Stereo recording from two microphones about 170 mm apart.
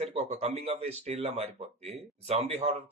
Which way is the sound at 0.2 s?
35° right (ahead or behind).